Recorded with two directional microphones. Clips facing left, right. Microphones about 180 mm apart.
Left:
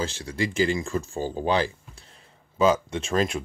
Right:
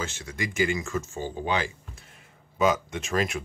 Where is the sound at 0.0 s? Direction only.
30° left (ahead or behind).